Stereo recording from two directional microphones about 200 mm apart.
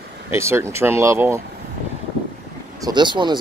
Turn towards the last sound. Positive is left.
turn(degrees=-20)  # may be behind; listen again after turning